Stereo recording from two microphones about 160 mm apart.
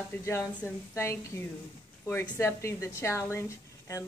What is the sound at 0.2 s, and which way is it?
Speech, 15° left (ahead or behind).